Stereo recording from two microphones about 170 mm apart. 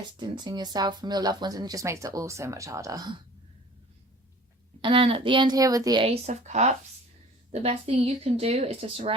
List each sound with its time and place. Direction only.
0.2 s speech: 25° right (ahead or behind)
4.8 s speech: 30° right (ahead or behind)